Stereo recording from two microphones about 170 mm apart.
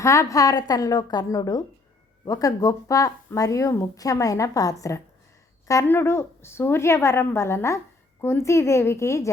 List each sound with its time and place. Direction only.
0.0 s a woman's voice: 15° left (ahead or behind)